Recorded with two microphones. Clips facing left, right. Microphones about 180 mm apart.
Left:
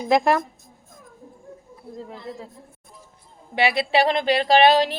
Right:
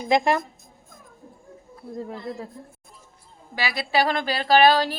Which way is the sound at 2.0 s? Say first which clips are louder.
Right 3 dB; 50° right (ahead or behind).